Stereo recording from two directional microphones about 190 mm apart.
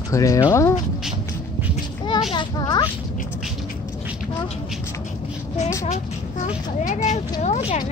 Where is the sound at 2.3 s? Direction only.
20° left (ahead or behind).